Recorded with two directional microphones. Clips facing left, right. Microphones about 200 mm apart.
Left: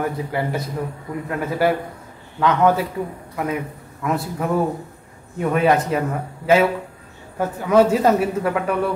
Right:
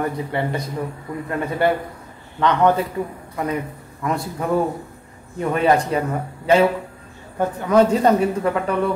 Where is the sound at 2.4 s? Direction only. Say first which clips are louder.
Even; 5° left (ahead or behind).